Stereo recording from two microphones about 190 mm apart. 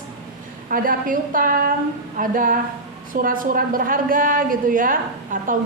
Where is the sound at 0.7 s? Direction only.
45° right (ahead or behind).